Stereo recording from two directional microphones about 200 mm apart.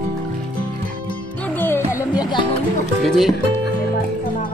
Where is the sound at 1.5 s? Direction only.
10° left (ahead or behind).